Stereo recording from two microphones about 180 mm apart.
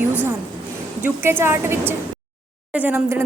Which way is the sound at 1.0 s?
10° right (ahead or behind).